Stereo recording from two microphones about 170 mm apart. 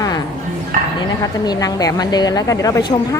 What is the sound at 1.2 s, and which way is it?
A woman's voice, 20° left (ahead or behind).